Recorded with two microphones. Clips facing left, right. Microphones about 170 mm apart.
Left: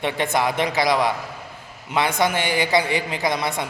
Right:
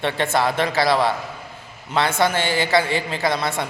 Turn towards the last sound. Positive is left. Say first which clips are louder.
# right 1 dB
turn(degrees=15)  # may be behind; listen again after turning